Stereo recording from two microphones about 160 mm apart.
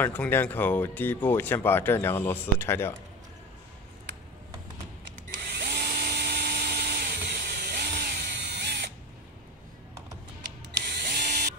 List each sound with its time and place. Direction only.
0.0 s speech: 10° left (ahead or behind)
5.6 s tools: 75° right (ahead or behind)
11.1 s a sound: 70° right (ahead or behind)